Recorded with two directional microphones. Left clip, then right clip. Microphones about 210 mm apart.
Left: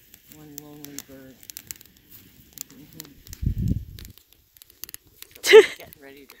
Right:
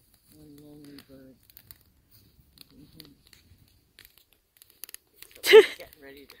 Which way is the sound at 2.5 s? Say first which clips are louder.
Left 8 dB; 55° left (ahead or behind).